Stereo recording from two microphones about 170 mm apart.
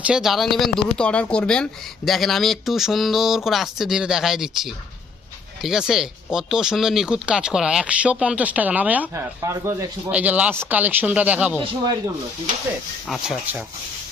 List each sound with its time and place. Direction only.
0.0 s speech: 5° right (ahead or behind)
11.6 s speech: 25° right (ahead or behind)
13.1 s speech: centre (ahead or behind)